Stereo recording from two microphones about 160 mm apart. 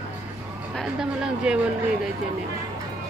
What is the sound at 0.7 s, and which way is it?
Speech, 5° right (ahead or behind).